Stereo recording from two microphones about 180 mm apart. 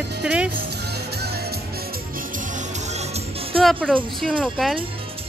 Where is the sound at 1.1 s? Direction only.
65° right (ahead or behind).